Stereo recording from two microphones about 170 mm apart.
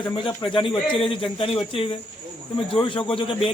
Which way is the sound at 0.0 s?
30° left (ahead or behind).